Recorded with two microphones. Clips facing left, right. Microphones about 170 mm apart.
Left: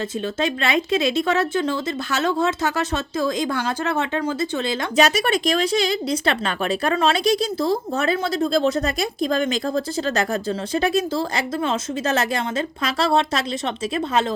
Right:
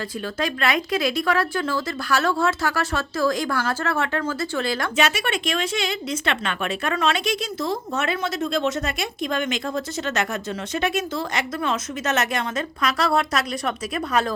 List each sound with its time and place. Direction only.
0.3 s speech: 25° left (ahead or behind)
4.9 s speech: 40° left (ahead or behind)